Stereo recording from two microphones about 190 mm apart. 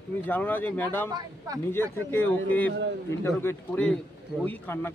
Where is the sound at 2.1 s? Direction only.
10° left (ahead or behind).